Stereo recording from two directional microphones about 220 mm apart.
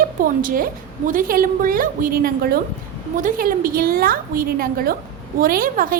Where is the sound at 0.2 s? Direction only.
40° right (ahead or behind).